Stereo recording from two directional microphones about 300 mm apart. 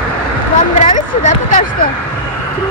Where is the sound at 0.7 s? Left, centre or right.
Left.